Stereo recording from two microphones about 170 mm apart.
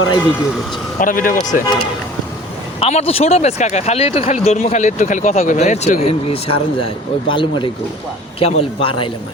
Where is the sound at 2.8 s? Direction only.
35° left (ahead or behind).